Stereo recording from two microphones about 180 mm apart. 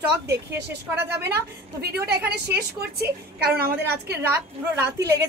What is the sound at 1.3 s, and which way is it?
A woman's voice, 60° right (ahead or behind).